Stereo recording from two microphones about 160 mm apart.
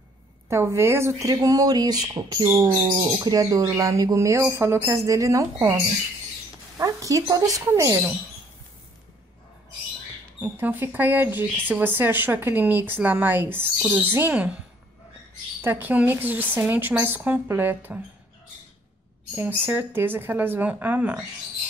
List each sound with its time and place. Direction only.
0.5 s speech: 15° right (ahead or behind)
6.8 s speech: 20° right (ahead or behind)
10.4 s speech: 10° right (ahead or behind)
15.6 s speech: 10° right (ahead or behind)
19.3 s speech: 10° right (ahead or behind)